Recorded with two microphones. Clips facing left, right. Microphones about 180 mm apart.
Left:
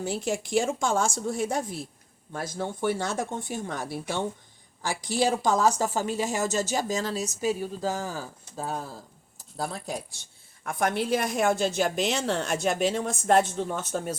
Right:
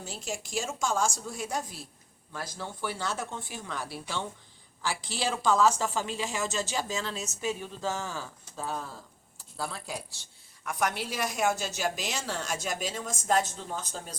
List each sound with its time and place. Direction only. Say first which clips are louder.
0.0 s a woman's voice: left 9 dB; 60° left (ahead or behind); by 10.0 s 40° left (ahead or behind)
10.7 s a woman's voice: left 6 dB; 55° left (ahead or behind)